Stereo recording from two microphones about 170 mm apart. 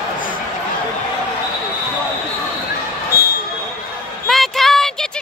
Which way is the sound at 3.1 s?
65° left (ahead or behind).